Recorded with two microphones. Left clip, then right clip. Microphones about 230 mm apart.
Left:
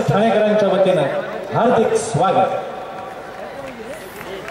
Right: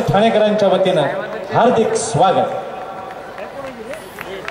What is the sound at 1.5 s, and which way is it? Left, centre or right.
Speech, left.